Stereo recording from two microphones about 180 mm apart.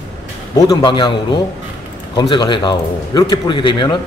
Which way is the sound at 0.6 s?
20° left (ahead or behind).